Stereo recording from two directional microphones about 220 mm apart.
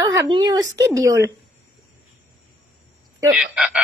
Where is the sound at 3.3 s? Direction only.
5° right (ahead or behind).